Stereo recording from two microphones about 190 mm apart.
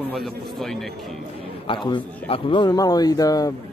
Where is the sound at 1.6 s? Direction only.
25° left (ahead or behind).